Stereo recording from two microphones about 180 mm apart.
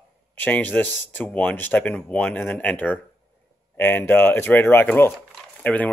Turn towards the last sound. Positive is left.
turn(degrees=10)  # may be behind; listen again after turning